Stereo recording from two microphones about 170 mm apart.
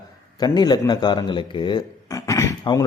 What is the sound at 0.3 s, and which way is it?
Speech, 25° left (ahead or behind).